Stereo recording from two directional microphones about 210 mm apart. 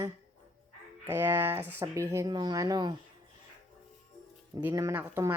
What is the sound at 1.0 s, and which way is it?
Speech, 10° right (ahead or behind).